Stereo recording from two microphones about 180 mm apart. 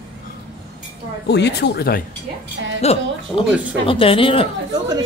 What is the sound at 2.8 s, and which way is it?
Speech, 35° left (ahead or behind).